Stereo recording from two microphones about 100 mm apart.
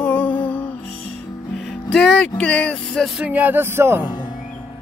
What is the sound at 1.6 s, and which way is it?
Music, 5° left (ahead or behind).